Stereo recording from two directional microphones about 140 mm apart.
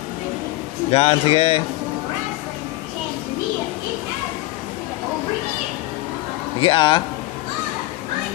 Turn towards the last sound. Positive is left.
turn(degrees=35)  # may be behind; listen again after turning